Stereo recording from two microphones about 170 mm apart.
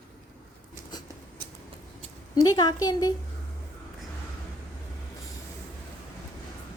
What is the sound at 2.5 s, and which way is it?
Speech, 25° left (ahead or behind).